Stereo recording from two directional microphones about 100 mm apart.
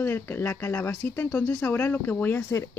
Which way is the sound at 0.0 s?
20° left (ahead or behind).